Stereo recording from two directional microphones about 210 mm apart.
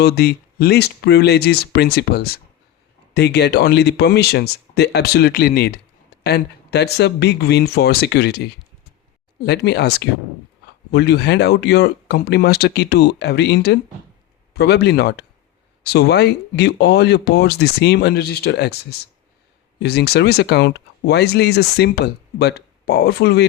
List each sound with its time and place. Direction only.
0.0 s speech: 50° left (ahead or behind)